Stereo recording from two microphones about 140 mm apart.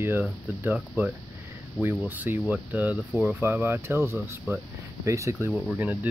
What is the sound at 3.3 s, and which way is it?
Speech, 15° right (ahead or behind).